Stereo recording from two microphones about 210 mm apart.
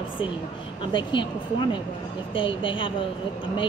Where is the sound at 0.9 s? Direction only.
20° left (ahead or behind).